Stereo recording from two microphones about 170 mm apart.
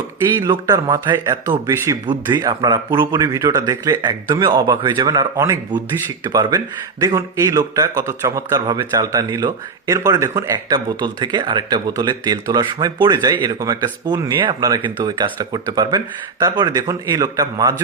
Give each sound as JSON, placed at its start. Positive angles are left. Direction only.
{"t": 0.3, "sound": "a man's voice", "side_deg": -20}
{"t": 1.1, "sound": "a man's voice", "side_deg": -15}